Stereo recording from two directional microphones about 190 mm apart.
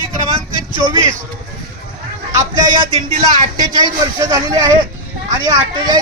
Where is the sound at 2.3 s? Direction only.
20° right (ahead or behind).